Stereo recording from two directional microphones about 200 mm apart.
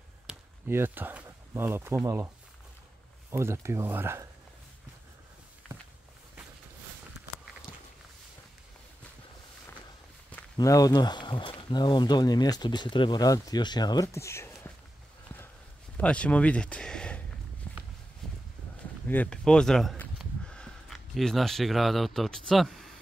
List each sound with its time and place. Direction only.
0.3 s speech: 10° right (ahead or behind)
10.3 s speech: 15° left (ahead or behind)
16.0 s speech: 5° left (ahead or behind)
17.6 s walk: 5° left (ahead or behind)
18.2 s a sound: centre (ahead or behind)
19.0 s speech: 5° left (ahead or behind)